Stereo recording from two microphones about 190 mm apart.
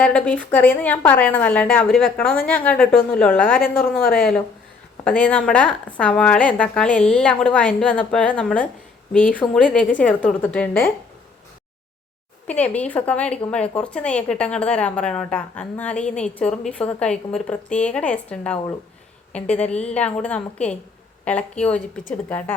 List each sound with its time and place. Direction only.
0.0 s a woman's voice: 5° left (ahead or behind)
9.4 s speech: 20° left (ahead or behind)
10.0 s a woman's voice: 5° left (ahead or behind)
12.5 s a woman's voice: 5° left (ahead or behind)